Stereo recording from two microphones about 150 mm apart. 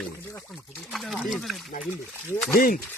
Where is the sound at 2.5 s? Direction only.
70° left (ahead or behind).